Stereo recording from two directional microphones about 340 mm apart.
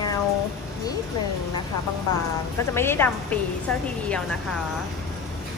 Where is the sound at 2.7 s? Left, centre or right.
Centre.